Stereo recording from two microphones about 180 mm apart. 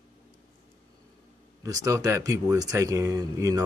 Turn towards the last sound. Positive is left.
turn(degrees=-20)  # may be behind; listen again after turning